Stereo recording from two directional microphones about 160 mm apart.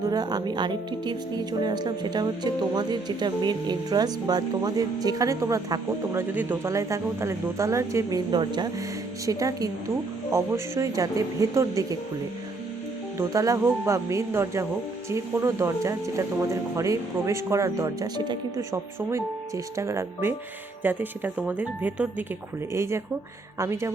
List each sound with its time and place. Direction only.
0.1 s speech: 25° right (ahead or behind)
13.1 s speech: 20° right (ahead or behind)